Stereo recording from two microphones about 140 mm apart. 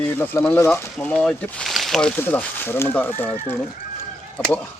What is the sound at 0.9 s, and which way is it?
Speech, 5° left (ahead or behind).